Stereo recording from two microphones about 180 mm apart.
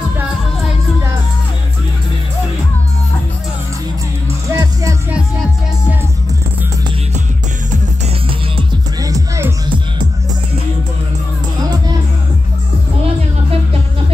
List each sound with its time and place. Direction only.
4.5 s music: 15° right (ahead or behind)
9.0 s music: 20° right (ahead or behind)